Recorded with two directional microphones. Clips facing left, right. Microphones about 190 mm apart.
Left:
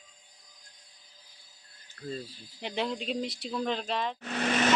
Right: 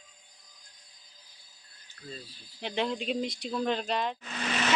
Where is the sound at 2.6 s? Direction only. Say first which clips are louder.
Right 1 dB; 5° left (ahead or behind).